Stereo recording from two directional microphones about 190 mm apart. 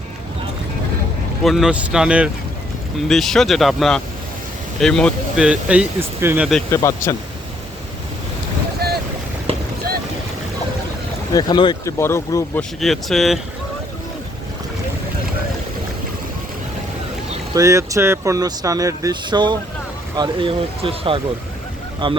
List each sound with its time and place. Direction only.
1.5 s speech: centre (ahead or behind)
6.7 s speech: 15° left (ahead or behind)
8.8 s boat: 55° right (ahead or behind)
11.3 s speech: 25° left (ahead or behind)
12.8 s speech: centre (ahead or behind)
17.5 s speech: 15° right (ahead or behind)